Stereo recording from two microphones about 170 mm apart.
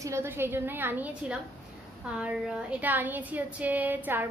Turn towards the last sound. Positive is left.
turn(degrees=-10)  # may be behind; listen again after turning